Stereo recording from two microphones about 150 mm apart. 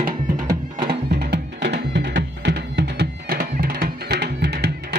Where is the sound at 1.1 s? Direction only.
90° right.